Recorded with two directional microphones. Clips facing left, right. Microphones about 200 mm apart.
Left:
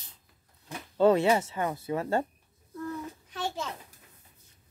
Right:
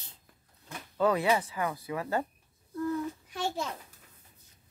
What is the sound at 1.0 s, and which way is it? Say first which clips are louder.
Speech: left 4 dB; 25° left (ahead or behind).